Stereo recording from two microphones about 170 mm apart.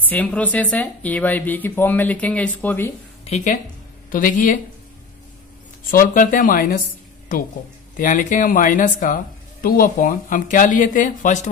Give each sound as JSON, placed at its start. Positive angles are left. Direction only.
{"t": 0.1, "sound": "speech", "side_deg": 10}
{"t": 4.1, "sound": "speech", "side_deg": 50}
{"t": 5.9, "sound": "speech", "side_deg": 55}
{"t": 8.0, "sound": "speech", "side_deg": 50}